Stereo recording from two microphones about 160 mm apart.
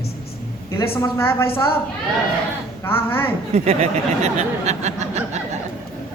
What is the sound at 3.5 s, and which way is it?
Speech, 40° right (ahead or behind).